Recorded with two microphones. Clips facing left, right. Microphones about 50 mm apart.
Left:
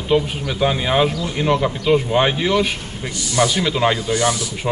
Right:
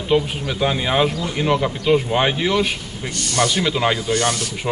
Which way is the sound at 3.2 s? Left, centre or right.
Right.